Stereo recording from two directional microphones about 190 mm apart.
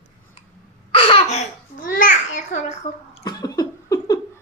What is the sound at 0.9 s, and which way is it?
Babbling, 30° left (ahead or behind).